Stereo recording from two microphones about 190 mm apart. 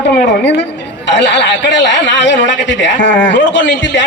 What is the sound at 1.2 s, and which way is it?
A man's voice, 70° left (ahead or behind).